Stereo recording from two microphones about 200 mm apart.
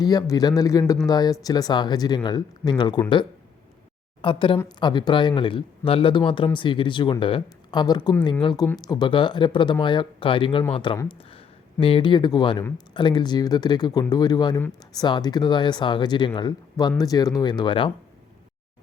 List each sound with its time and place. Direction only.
0.0 s speech: 20° left (ahead or behind)